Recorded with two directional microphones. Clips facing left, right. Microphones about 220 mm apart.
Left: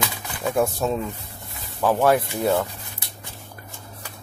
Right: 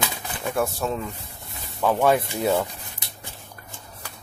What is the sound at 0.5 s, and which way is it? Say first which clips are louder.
Speech: left 3 dB; 15° left (ahead or behind).